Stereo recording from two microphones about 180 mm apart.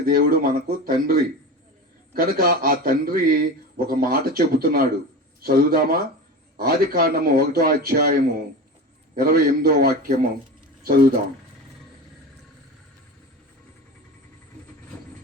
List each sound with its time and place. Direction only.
0.0 s a man's voice: 55° right (ahead or behind)
2.1 s a man's voice: 55° right (ahead or behind)